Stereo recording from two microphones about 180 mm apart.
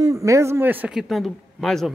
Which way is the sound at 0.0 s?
15° right (ahead or behind).